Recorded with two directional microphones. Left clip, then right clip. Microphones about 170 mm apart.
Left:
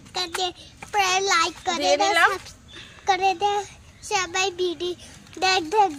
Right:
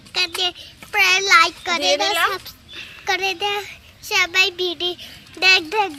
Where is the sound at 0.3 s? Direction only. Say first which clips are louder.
Right 4 dB; 35° left (ahead or behind).